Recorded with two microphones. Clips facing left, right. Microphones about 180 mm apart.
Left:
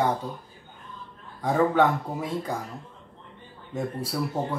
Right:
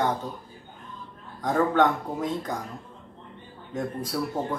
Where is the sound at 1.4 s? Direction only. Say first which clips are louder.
Left 1 dB; 10° left (ahead or behind).